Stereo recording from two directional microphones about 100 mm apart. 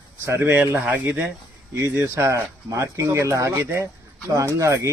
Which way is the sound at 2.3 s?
30° right (ahead or behind).